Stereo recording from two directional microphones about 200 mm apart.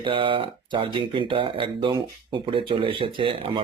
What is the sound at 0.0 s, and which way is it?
Speech, 25° right (ahead or behind).